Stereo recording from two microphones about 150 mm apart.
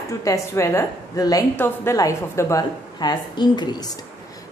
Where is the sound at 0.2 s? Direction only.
20° left (ahead or behind).